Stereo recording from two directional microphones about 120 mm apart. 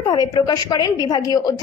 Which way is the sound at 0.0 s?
35° left (ahead or behind).